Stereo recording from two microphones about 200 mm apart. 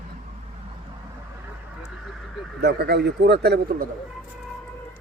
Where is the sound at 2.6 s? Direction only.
55° right (ahead or behind).